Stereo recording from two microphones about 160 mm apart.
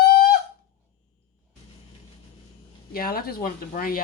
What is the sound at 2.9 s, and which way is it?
Speech, 65° left (ahead or behind).